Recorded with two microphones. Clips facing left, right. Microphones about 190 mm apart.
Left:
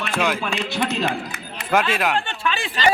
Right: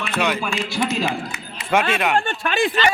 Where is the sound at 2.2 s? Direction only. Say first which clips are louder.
Right 5 dB; 50° right (ahead or behind).